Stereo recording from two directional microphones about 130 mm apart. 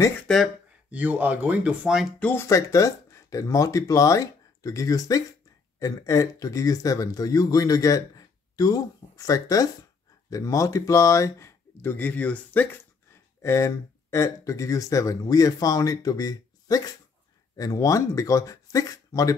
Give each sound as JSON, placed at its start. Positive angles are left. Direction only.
{"t": 0.9, "sound": "speech", "side_deg": -10}
{"t": 2.1, "sound": "speech", "side_deg": 10}
{"t": 2.4, "sound": "speech", "side_deg": 25}